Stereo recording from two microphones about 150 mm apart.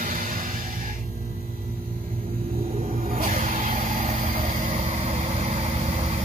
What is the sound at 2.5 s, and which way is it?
Vehicle, 80° right.